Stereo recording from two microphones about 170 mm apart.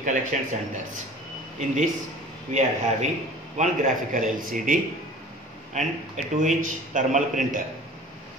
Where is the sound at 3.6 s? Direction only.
50° right (ahead or behind).